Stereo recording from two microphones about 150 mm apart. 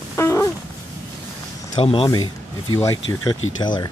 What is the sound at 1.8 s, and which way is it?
Speech, 35° left (ahead or behind).